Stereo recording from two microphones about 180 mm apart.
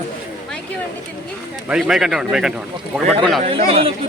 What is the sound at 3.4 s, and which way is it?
Speech, 35° right (ahead or behind).